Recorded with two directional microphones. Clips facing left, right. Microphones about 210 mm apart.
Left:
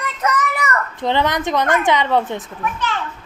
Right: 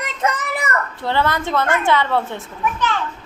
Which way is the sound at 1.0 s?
20° left (ahead or behind).